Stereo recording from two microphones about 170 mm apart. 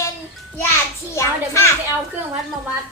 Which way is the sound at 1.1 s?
15° left (ahead or behind).